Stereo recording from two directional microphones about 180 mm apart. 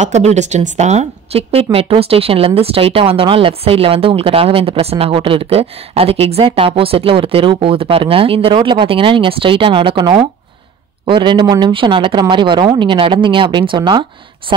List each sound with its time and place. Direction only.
0.0 s speech: 40° right (ahead or behind)